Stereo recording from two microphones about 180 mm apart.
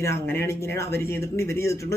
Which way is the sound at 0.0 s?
15° left (ahead or behind).